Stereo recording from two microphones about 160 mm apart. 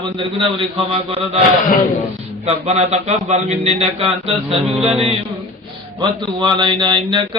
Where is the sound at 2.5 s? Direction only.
40° right (ahead or behind).